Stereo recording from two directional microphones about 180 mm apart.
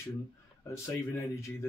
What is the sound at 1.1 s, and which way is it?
Speech, 15° left (ahead or behind).